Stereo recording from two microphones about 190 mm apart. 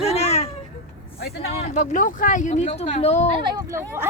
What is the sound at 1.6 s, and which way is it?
Speech, 40° left (ahead or behind).